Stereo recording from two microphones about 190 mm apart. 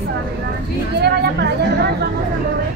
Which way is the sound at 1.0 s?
60° right (ahead or behind).